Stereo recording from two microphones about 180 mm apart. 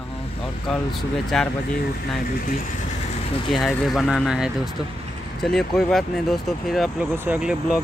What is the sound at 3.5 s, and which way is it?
Speech, centre (ahead or behind).